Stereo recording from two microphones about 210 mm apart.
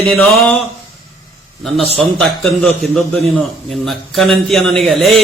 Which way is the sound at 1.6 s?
Centre (ahead or behind).